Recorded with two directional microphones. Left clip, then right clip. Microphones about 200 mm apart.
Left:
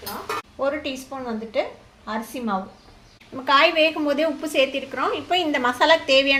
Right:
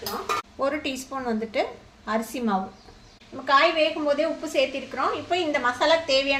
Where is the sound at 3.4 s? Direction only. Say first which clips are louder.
Left 3 dB; 35° left (ahead or behind).